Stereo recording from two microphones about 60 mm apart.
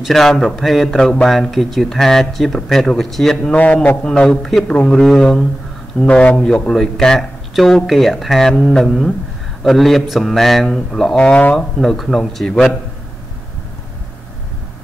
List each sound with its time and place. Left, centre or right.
0.0 s speech: centre
3.5 s a man's voice: left
4.0 s a man's voice: centre
4.9 s speech: centre
5.9 s a man's voice: centre
11.1 s a man's voice: left
11.8 s speech: centre